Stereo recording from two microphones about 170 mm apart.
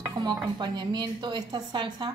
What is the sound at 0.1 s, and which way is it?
Dishes, 25° right (ahead or behind).